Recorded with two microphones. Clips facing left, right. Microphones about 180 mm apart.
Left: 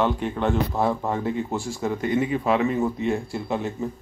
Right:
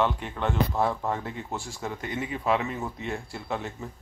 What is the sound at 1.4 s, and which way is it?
Speech, 10° left (ahead or behind).